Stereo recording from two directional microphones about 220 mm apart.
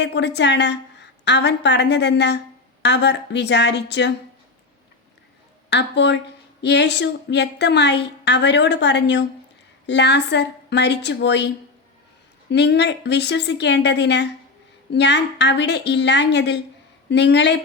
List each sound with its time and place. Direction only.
0.0 s speech: 50° left (ahead or behind)
5.7 s speech: 50° left (ahead or behind)